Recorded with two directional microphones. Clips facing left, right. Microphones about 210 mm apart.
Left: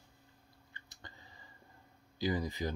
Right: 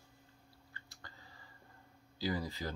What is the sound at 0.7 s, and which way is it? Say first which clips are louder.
Chewing: left 2 dB; 20° left (ahead or behind).